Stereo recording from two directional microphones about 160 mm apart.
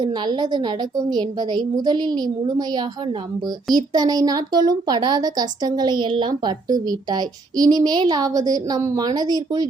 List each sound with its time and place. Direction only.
0.0 s a woman's voice: 30° right (ahead or behind)